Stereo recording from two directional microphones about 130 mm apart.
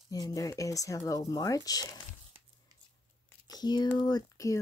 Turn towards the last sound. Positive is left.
turn(degrees=30)  # may be behind; listen again after turning